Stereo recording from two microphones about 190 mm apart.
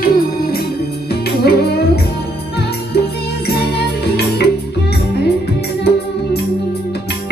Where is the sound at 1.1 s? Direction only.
55° left (ahead or behind).